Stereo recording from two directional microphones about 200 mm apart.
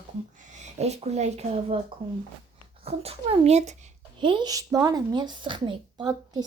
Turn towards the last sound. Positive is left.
turn(degrees=-20)  # may be behind; listen again after turning